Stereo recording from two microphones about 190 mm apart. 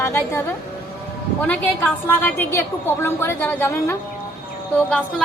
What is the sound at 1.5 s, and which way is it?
A woman's voice, 10° left (ahead or behind).